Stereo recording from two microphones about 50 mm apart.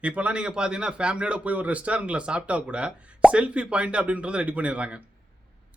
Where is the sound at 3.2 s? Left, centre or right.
Centre.